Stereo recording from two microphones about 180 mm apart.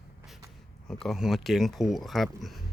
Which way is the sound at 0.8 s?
Centre (ahead or behind).